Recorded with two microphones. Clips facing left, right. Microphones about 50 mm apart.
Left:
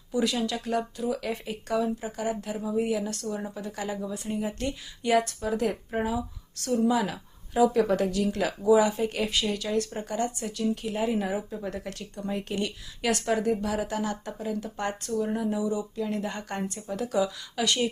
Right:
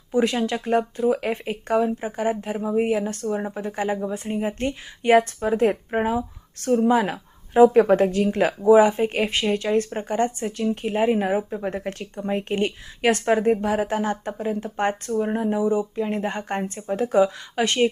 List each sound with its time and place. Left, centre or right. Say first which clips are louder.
0.1 s speech: right 6 dB; right